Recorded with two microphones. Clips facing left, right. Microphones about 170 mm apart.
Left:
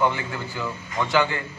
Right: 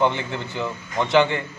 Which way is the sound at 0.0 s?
20° right (ahead or behind).